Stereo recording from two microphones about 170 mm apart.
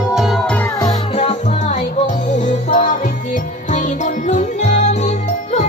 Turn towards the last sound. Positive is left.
turn(degrees=40)  # may be behind; listen again after turning